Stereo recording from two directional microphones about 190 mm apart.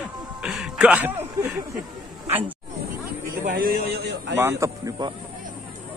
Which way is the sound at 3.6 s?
65° right (ahead or behind).